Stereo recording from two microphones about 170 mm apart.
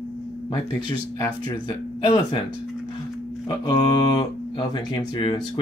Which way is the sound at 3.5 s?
25° left (ahead or behind).